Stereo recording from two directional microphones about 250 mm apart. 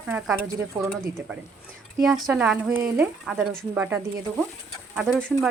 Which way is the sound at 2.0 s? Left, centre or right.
Centre.